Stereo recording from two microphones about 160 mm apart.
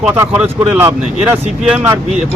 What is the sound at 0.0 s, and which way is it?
Speech, 10° right (ahead or behind).